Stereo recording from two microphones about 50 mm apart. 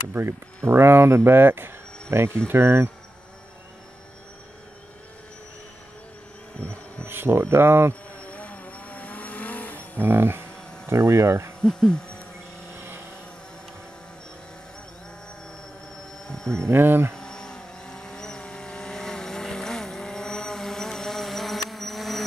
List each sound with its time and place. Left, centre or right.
0.7 s speech: right
2.0 s speech: right
6.6 s insect: left
7.1 s speech: right
8.2 s vehicle: left
9.9 s speech: right
10.9 s speech: right
11.6 s a sound: centre
16.3 s a sound: centre
16.6 s speech: right
17.1 s vehicle: centre